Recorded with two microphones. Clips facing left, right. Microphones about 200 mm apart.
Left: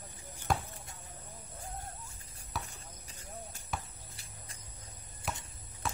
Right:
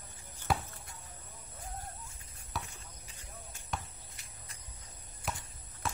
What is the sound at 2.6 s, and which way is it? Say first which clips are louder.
Basketball bounce: left 1 dB; 40° left (ahead or behind).